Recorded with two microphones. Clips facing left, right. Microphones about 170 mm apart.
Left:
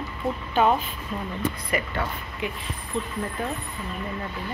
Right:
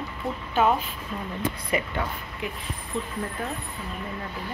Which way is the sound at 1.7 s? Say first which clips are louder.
Right 2 dB; 20° right (ahead or behind).